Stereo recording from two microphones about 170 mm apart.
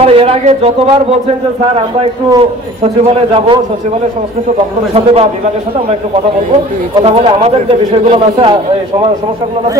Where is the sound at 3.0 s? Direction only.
30° right (ahead or behind).